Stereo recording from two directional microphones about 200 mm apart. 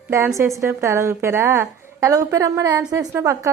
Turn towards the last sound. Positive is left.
turn(degrees=-15)  # may be behind; listen again after turning